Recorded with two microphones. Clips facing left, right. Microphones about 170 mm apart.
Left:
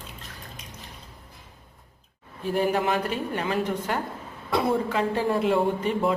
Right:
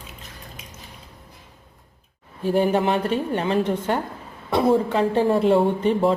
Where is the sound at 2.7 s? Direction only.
30° right (ahead or behind).